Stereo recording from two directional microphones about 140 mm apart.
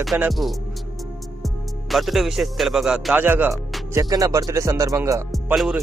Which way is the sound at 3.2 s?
10° right (ahead or behind).